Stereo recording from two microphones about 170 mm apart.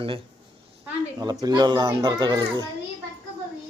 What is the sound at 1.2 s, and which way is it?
Speech, 20° right (ahead or behind).